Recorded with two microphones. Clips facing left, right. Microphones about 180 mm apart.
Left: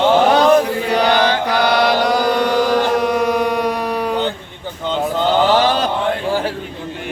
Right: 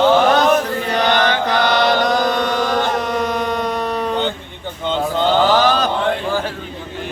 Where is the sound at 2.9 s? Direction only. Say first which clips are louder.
Left 4 dB; 10° left (ahead or behind).